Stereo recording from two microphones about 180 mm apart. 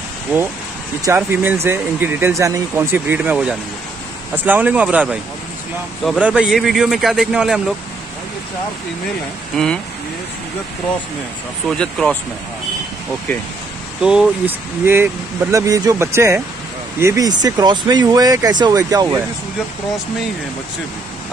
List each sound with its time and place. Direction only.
1.0 s a man's voice: 10° right (ahead or behind)
9.5 s a man's voice: centre (ahead or behind)
11.8 s a man's voice: 5° left (ahead or behind)
14.0 s speech: 5° right (ahead or behind)